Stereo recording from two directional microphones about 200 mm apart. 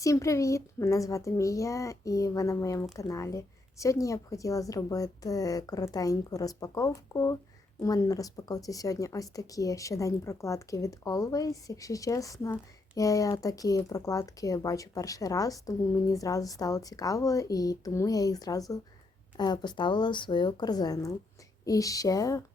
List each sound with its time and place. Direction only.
0.0 s speech: 15° left (ahead or behind)